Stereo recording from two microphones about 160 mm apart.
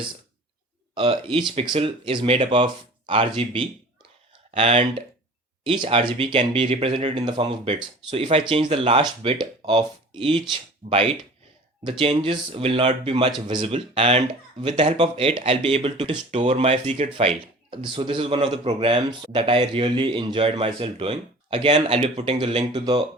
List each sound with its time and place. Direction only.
0.9 s a man's voice: 35° right (ahead or behind)